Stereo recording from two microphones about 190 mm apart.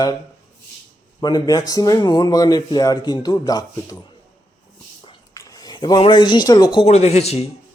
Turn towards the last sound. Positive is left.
turn(degrees=35)  # may be behind; listen again after turning